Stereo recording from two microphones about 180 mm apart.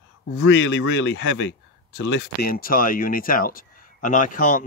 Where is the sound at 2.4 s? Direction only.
55° left (ahead or behind).